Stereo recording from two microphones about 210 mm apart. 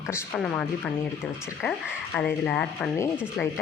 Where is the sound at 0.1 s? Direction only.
5° left (ahead or behind).